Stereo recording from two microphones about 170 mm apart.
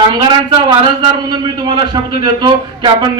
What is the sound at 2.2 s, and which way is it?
Speech, 25° right (ahead or behind).